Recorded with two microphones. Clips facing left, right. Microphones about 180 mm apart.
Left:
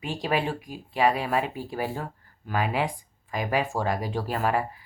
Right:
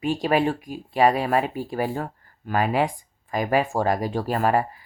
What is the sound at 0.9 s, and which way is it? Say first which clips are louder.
Speech: right 4 dB; 45° right (ahead or behind).